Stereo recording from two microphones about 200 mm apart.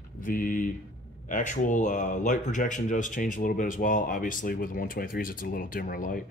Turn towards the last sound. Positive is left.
turn(degrees=45)  # may be behind; listen again after turning